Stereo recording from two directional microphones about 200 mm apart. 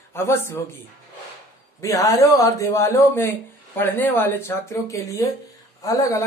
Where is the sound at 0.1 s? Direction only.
10° left (ahead or behind).